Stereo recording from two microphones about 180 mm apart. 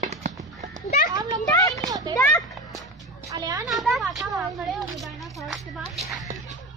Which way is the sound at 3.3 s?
20° right (ahead or behind).